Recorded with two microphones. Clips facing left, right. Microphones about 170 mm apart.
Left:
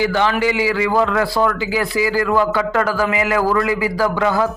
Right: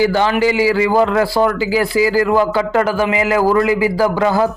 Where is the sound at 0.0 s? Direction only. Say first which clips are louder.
Right 3 dB; 35° right (ahead or behind).